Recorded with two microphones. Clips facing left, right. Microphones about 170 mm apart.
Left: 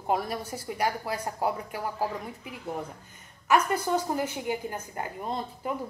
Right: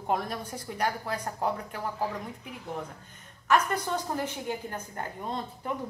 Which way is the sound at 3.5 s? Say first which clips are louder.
Left 2 dB; 10° left (ahead or behind).